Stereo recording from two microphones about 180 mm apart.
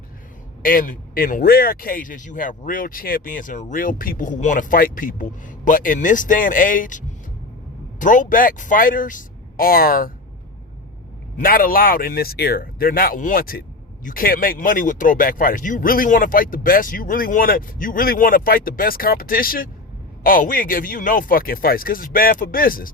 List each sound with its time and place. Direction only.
0.6 s speech: 50° left (ahead or behind)
11.3 s speech: 50° left (ahead or behind)